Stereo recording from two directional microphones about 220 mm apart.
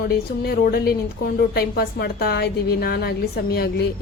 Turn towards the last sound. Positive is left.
turn(degrees=45)  # may be behind; listen again after turning